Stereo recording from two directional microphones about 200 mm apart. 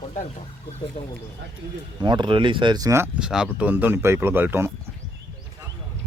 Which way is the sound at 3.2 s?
5° right (ahead or behind).